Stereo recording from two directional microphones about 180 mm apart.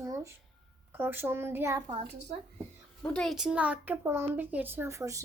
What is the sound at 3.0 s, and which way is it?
A child's voice, 5° left (ahead or behind).